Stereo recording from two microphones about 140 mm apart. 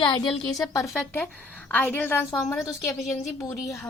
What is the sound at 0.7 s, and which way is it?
A woman's voice, 20° left (ahead or behind).